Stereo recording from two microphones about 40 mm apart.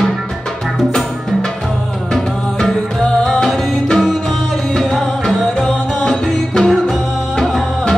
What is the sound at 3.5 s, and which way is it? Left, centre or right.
Music, centre.